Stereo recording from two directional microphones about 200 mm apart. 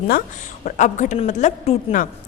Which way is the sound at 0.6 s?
40° left (ahead or behind).